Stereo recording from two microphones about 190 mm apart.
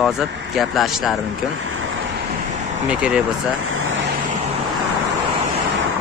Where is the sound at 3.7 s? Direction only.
90° right.